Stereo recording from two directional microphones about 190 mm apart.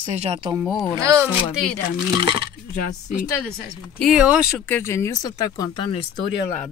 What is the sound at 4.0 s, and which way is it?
Speech, 5° right (ahead or behind).